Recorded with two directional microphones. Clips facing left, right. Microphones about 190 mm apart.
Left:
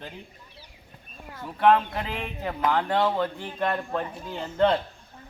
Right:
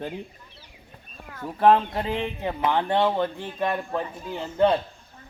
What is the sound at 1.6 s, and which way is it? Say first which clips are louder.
Speech: right 2 dB; 35° right (ahead or behind).